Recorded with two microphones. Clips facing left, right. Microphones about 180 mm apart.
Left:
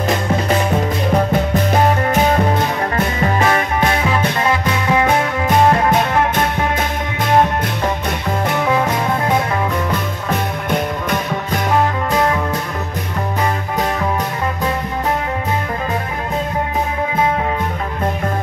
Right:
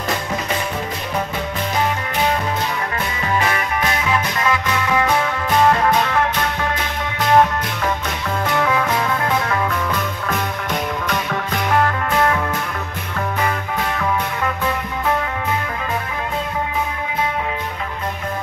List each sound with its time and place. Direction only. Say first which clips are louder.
1.5 s music: left 6 dB; 45° left (ahead or behind); by 5.1 s 30° left (ahead or behind)